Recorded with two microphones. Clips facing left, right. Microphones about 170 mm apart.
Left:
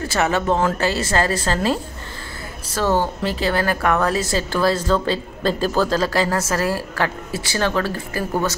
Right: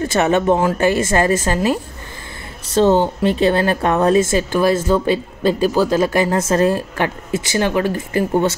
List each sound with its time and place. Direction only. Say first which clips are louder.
0.1 s a woman's voice: right 4 dB; 20° right (ahead or behind)